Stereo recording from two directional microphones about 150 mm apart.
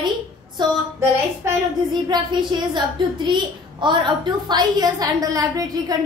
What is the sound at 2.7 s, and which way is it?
A woman's voice, 30° right (ahead or behind).